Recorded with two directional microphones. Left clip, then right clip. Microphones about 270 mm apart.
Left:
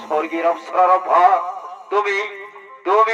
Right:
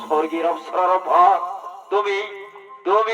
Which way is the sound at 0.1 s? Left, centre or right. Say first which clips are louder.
Left 1 dB; centre.